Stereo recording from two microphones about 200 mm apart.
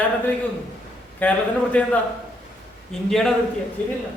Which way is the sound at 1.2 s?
10° left (ahead or behind).